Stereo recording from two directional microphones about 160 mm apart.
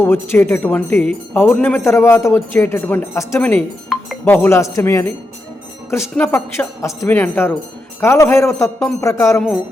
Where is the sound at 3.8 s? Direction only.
5° left (ahead or behind).